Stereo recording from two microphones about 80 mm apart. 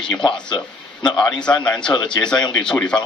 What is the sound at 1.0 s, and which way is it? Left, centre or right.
Speech, centre.